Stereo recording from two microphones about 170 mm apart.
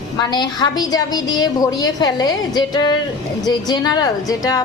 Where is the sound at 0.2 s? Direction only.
25° left (ahead or behind).